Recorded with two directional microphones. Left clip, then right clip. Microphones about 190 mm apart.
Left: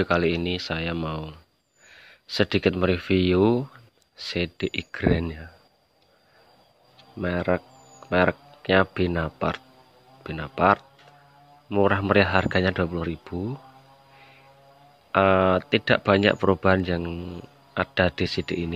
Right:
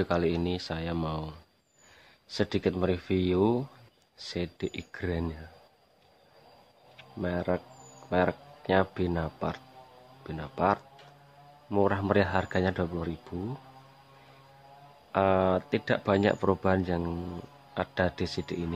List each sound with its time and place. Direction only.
0.0 s speech: 10° left (ahead or behind)
7.2 s speech: 15° left (ahead or behind)
15.0 s speech: 20° left (ahead or behind)